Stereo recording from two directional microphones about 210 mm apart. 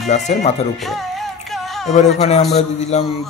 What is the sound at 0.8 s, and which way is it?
Music, centre (ahead or behind).